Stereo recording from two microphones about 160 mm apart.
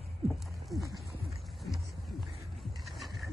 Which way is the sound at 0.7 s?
Centre (ahead or behind).